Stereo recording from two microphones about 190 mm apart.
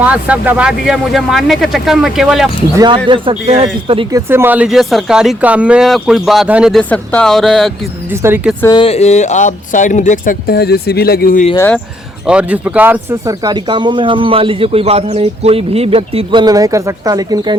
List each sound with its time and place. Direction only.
0.0 s speech: 5° right (ahead or behind)
2.7 s speech: 25° right (ahead or behind)
4.1 s speech: 10° right (ahead or behind)
8.1 s speech: 10° right (ahead or behind)
8.6 s speech: 25° left (ahead or behind); by 11.4 s 50° left (ahead or behind)
11.5 s speech: 10° left (ahead or behind)
12.2 s speech: 5° right (ahead or behind); by 17.6 s 20° right (ahead or behind)